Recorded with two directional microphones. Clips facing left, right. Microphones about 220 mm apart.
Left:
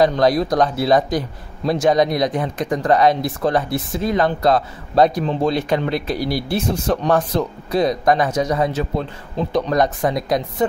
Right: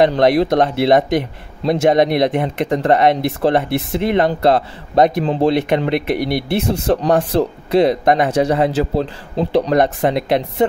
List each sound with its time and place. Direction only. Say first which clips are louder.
0.0 s speech: right 3 dB; 25° right (ahead or behind)